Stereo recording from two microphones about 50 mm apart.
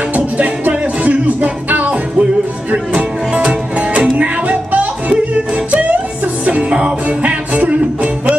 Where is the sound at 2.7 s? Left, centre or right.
Centre.